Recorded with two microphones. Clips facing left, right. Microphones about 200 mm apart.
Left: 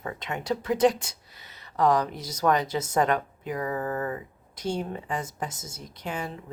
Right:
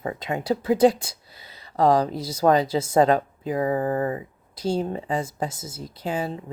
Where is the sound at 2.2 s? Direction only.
10° right (ahead or behind).